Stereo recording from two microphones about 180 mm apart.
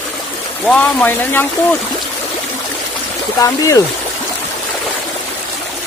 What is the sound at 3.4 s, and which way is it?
Speech, 20° left (ahead or behind).